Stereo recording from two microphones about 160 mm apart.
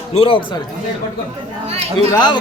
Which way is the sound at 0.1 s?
35° left (ahead or behind).